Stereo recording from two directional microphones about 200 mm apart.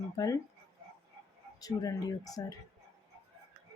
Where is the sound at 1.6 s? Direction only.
20° left (ahead or behind).